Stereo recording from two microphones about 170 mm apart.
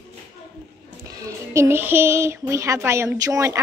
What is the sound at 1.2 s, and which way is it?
A woman's voice, 15° right (ahead or behind).